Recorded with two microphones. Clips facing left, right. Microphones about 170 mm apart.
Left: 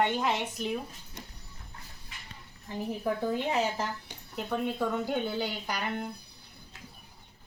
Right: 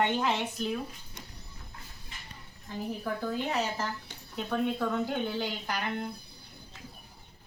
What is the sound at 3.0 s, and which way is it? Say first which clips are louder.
Speech: left 4 dB; 15° left (ahead or behind).